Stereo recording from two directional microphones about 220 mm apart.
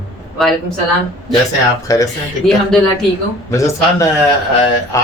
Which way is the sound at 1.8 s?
15° left (ahead or behind).